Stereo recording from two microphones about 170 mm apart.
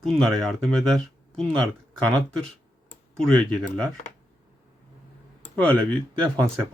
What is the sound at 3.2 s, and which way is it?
Speech, 5° left (ahead or behind).